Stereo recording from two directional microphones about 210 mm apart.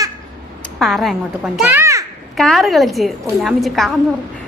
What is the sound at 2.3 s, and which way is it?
A woman's voice, centre (ahead or behind).